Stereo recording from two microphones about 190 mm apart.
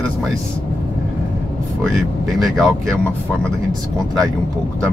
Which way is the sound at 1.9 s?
Centre (ahead or behind).